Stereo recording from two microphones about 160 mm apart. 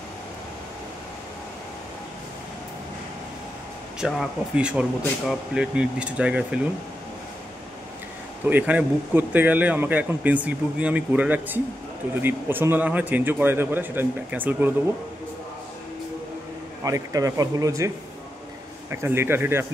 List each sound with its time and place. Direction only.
4.0 s speech: 5° right (ahead or behind)
8.5 s speech: 10° right (ahead or behind)
16.8 s speech: 20° right (ahead or behind)